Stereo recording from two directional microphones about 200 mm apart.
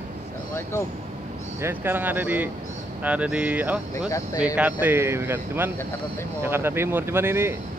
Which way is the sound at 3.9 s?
15° left (ahead or behind).